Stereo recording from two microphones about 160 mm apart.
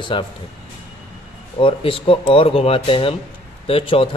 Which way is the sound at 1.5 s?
35° left (ahead or behind).